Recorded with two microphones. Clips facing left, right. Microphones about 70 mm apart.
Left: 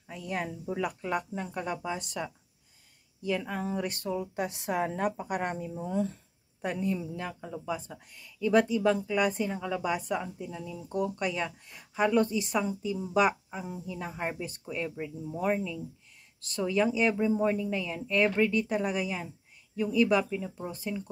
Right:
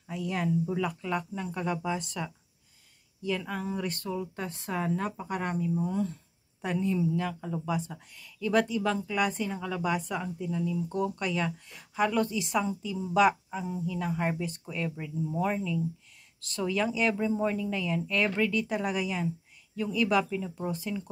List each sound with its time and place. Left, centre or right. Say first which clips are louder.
0.2 s a woman's voice: right 5 dB; centre
1.6 s a woman's voice: right 3 dB; centre
3.3 s a woman's voice: left 1 dB; centre
6.6 s a woman's voice: right 3 dB; centre
7.3 s a woman's voice: right 3 dB; centre
11.0 s a woman's voice: left 2 dB; centre
14.4 s speech: right 3 dB; centre
14.7 s a woman's voice: even; centre